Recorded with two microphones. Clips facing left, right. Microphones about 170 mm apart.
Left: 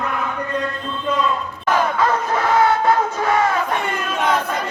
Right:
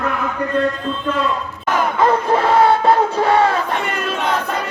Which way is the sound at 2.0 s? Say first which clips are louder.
Right 4 dB; 25° right (ahead or behind).